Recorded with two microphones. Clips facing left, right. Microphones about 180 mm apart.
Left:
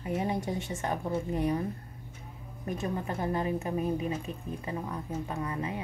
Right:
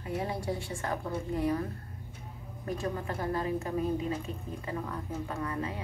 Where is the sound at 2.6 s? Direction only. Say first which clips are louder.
Left 1 dB; 20° left (ahead or behind).